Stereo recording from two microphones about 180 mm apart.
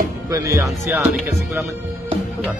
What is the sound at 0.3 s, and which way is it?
Speech, 15° right (ahead or behind).